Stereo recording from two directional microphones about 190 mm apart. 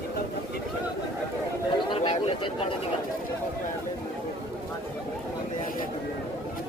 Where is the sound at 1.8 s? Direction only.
30° left (ahead or behind).